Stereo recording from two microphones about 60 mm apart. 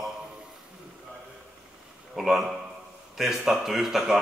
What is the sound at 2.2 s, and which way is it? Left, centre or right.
A man's voice, centre.